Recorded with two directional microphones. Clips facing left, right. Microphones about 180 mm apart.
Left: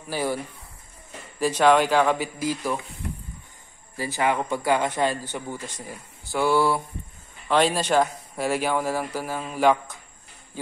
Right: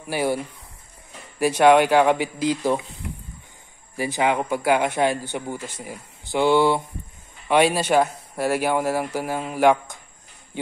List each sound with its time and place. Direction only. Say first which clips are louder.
0.1 s a man's voice: right 3 dB; 10° right (ahead or behind)
1.4 s a man's voice: right 3 dB; 10° right (ahead or behind)
2.3 s speech: right 5 dB; 20° right (ahead or behind)
3.9 s a man's voice: right 3 dB; 20° right (ahead or behind)